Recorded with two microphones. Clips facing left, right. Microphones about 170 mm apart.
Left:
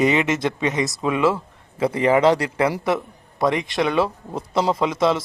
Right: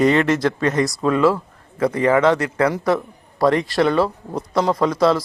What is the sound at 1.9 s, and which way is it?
A man's voice, 30° left (ahead or behind).